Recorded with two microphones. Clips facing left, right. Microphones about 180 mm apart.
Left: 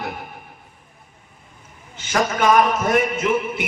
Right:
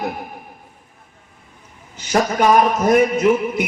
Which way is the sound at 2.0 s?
40° right (ahead or behind).